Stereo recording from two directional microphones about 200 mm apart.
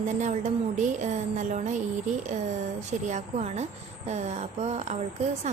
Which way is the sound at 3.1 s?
35° right (ahead or behind).